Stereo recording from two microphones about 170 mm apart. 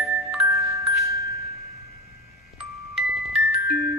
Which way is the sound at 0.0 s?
Centre (ahead or behind).